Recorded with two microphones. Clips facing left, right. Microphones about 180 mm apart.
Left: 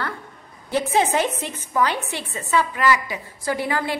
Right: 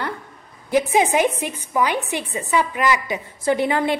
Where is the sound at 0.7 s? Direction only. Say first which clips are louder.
Right 3 dB; 15° right (ahead or behind).